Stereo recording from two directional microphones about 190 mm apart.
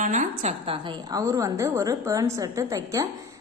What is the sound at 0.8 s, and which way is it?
A woman's voice, 25° right (ahead or behind).